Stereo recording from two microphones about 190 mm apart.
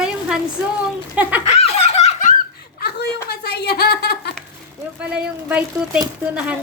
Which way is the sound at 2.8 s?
60° left (ahead or behind).